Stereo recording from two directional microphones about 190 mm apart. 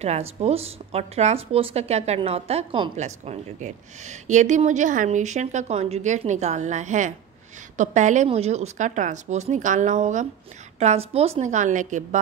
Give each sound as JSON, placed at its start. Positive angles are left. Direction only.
{"t": 0.0, "sound": "speech", "side_deg": -35}